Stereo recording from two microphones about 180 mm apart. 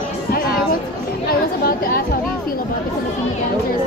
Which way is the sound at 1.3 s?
55° left (ahead or behind).